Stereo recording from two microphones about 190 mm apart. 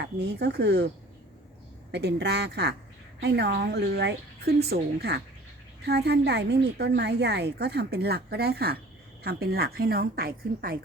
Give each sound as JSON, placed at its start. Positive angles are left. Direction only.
{"t": 0.0, "sound": "a woman's voice", "side_deg": -65}
{"t": 1.9, "sound": "a woman's voice", "side_deg": -60}